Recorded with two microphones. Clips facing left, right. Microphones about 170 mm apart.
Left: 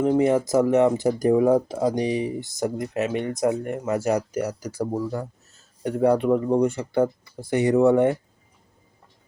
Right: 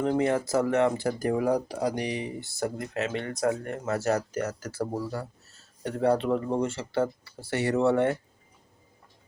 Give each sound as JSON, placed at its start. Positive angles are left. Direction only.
{"t": 0.0, "sound": "speech", "side_deg": 15}